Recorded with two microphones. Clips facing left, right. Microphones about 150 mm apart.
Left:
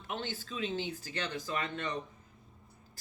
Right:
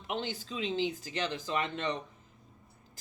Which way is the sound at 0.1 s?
20° right (ahead or behind).